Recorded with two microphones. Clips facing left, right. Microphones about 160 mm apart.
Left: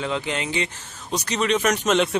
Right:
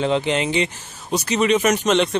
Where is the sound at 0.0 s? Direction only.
25° right (ahead or behind).